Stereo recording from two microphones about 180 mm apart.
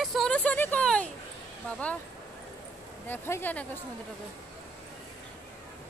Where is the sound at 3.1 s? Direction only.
10° left (ahead or behind).